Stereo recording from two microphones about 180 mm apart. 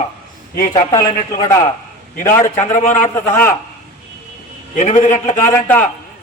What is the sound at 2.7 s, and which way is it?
Speech, 45° left (ahead or behind).